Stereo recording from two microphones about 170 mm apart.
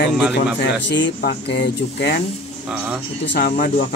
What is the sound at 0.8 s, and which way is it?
Speech, 90° left.